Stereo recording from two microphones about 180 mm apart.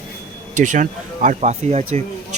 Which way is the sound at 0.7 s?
45° right (ahead or behind).